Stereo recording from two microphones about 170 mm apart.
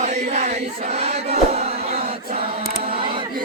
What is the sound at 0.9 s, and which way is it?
Battle cry, 40° right (ahead or behind).